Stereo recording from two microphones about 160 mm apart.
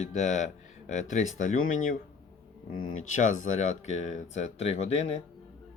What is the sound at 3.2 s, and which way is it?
Speech, 50° left (ahead or behind).